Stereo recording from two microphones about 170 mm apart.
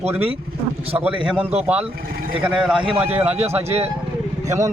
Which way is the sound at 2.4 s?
5° right (ahead or behind).